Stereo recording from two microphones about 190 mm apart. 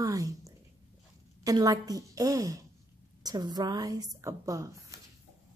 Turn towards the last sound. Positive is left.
turn(degrees=-15)  # may be behind; listen again after turning